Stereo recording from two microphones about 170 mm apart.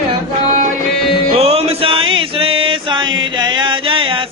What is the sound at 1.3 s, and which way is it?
Music, 35° right (ahead or behind).